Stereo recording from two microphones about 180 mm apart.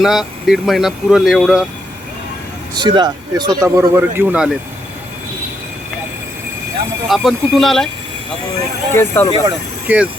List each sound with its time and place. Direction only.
0.0 s speech: centre (ahead or behind)
2.7 s speech: 25° right (ahead or behind); by 4.5 s 5° right (ahead or behind)
7.1 s speech: centre (ahead or behind)
9.0 s speech: 15° left (ahead or behind)
9.4 s speech: 10° right (ahead or behind)